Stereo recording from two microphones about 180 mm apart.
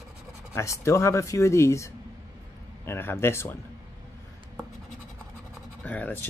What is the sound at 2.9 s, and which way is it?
Speech, 15° left (ahead or behind).